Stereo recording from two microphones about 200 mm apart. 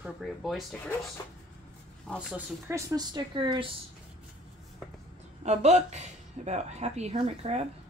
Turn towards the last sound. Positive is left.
turn(degrees=-30)  # may be behind; listen again after turning